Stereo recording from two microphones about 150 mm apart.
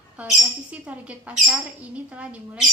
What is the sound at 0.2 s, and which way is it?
Speech, 10° right (ahead or behind).